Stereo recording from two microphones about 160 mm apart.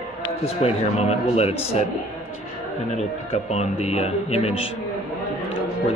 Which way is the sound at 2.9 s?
45° left (ahead or behind).